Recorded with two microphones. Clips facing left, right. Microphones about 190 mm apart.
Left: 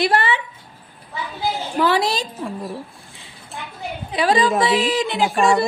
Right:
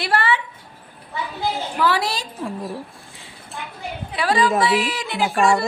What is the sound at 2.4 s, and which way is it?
Speech, centre (ahead or behind).